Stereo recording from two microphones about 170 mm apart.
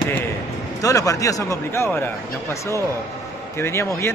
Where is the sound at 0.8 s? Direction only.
20° left (ahead or behind).